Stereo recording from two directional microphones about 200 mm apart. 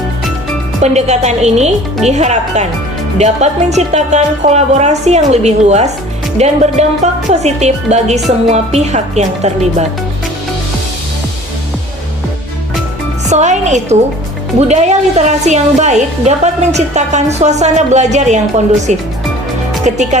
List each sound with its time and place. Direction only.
0.8 s a woman's voice: 35° right (ahead or behind)
13.2 s a woman's voice: 35° right (ahead or behind)